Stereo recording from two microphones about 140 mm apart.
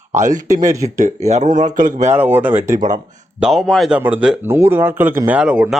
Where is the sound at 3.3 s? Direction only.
5° right (ahead or behind).